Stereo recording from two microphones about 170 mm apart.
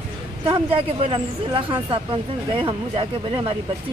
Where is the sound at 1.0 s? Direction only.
30° right (ahead or behind).